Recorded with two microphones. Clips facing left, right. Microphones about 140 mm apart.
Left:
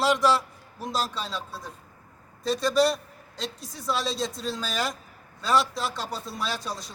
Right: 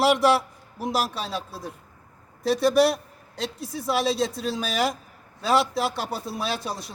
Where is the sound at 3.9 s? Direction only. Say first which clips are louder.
Right 5 dB; 60° right (ahead or behind).